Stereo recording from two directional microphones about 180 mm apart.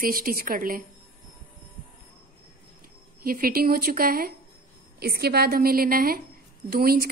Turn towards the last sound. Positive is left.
turn(degrees=-55)  # may be behind; listen again after turning